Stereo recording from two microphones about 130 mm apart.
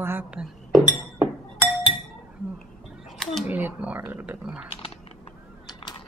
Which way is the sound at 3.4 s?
15° right (ahead or behind).